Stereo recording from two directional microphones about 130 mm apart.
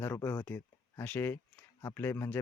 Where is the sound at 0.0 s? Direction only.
20° left (ahead or behind).